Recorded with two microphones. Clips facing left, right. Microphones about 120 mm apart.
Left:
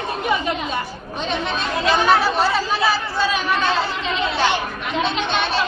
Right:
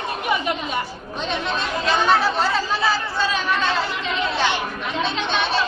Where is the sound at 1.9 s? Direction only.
5° left (ahead or behind).